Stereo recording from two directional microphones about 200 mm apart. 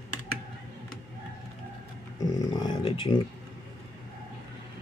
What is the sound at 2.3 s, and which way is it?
Speech, 20° left (ahead or behind).